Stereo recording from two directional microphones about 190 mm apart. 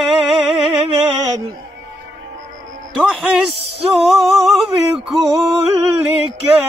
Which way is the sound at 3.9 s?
Centre (ahead or behind).